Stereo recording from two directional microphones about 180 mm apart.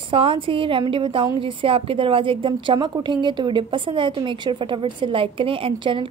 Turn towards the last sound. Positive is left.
turn(degrees=-30)  # may be behind; listen again after turning